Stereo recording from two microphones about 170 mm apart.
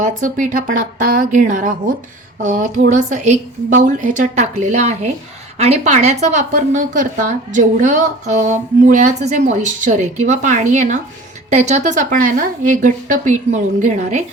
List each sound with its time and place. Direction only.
0.2 s a woman's voice: 50° right (ahead or behind)